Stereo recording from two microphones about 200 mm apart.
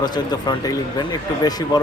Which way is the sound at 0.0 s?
20° left (ahead or behind).